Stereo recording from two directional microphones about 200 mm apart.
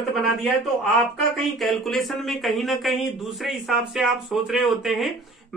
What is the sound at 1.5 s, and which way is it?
Speech, centre (ahead or behind).